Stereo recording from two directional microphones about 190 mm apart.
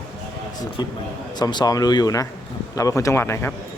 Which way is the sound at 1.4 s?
25° left (ahead or behind).